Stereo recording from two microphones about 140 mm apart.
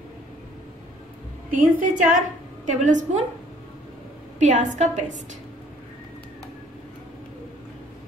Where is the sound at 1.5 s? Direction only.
70° right (ahead or behind).